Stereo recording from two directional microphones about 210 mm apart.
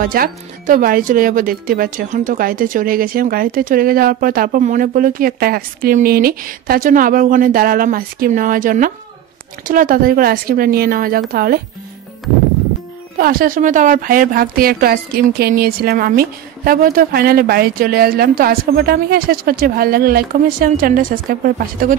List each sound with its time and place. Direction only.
0.0 s speech: 45° right (ahead or behind)
13.2 s speech: 45° right (ahead or behind)